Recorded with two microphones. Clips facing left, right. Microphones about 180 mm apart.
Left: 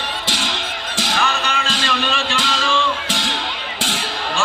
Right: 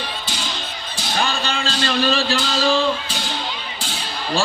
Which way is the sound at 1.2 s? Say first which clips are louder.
Right 2 dB; 30° right (ahead or behind).